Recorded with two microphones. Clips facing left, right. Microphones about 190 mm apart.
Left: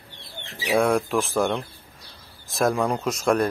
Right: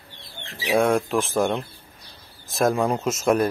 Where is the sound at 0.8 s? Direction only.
Centre (ahead or behind).